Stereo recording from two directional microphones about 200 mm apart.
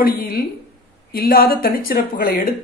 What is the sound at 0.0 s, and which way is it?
A woman's voice, 45° left (ahead or behind).